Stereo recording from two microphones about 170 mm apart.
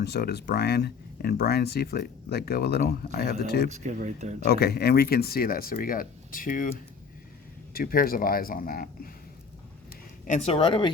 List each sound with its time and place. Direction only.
0.0 s speech: 75° left (ahead or behind)
3.7 s speech: 45° right (ahead or behind)
4.4 s speech: 70° left (ahead or behind); by 6.7 s 55° left (ahead or behind)
7.7 s speech: 60° left (ahead or behind)
9.9 s speech: 45° left (ahead or behind); by 10.9 s 30° left (ahead or behind)